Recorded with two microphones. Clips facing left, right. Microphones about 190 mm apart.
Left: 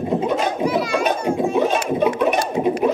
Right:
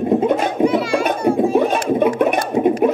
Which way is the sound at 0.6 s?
30° right (ahead or behind).